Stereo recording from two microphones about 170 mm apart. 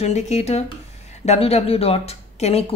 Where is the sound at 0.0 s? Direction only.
40° left (ahead or behind).